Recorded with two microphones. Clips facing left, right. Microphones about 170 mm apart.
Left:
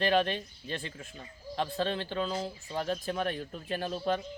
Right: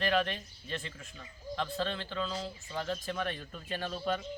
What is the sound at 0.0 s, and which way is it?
Speech, 30° left (ahead or behind).